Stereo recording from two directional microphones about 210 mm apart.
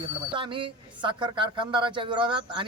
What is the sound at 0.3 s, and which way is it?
A man's voice, 25° right (ahead or behind).